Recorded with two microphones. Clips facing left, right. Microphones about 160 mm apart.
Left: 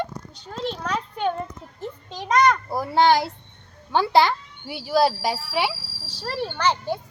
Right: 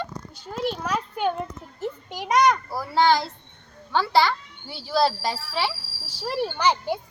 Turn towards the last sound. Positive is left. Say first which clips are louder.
# even
turn(degrees=-10)  # may be behind; listen again after turning